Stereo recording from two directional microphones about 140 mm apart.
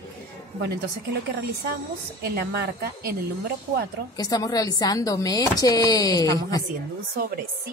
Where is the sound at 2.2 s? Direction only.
90° right.